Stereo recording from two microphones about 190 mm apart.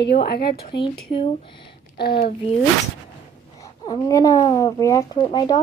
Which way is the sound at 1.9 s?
55° left (ahead or behind).